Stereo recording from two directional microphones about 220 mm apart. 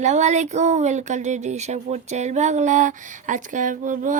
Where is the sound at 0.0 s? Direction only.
30° right (ahead or behind).